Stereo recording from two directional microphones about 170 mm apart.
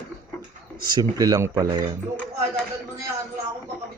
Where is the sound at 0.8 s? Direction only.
25° right (ahead or behind).